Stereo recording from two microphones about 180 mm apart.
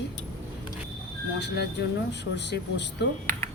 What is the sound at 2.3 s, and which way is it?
Speech, 70° left (ahead or behind).